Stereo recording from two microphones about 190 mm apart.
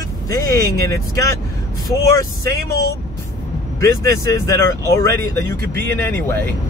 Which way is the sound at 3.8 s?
15° left (ahead or behind).